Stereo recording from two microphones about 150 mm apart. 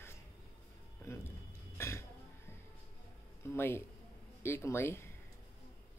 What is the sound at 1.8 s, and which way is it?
Throat clearing, 15° left (ahead or behind).